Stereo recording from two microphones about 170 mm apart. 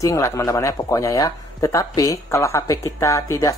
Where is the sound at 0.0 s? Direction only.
15° left (ahead or behind).